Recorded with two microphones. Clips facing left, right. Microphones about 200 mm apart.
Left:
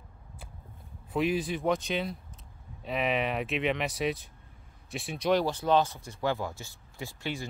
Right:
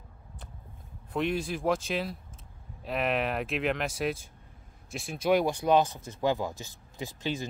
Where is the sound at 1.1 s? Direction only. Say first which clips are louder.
Left 1 dB; centre (ahead or behind).